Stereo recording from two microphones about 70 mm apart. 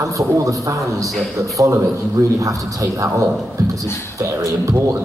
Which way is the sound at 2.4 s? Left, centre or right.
Right.